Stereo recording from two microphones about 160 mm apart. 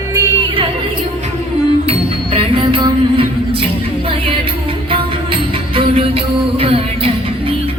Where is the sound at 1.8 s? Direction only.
35° right (ahead or behind).